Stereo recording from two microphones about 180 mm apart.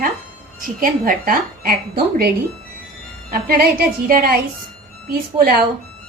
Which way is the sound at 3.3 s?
55° right (ahead or behind).